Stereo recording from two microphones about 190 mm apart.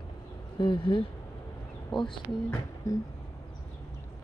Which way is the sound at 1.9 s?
Centre (ahead or behind).